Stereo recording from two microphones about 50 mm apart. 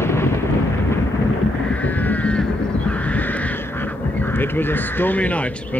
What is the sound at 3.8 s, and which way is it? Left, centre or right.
Duck, left.